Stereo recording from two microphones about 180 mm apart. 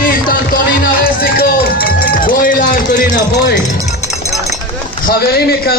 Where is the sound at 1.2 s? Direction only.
55° left (ahead or behind).